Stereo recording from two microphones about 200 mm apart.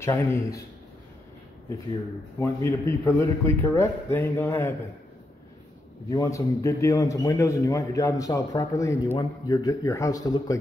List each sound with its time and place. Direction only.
0.0 s a man's voice: 15° left (ahead or behind)
1.9 s a man's voice: 15° left (ahead or behind)
6.0 s a man's voice: 15° left (ahead or behind)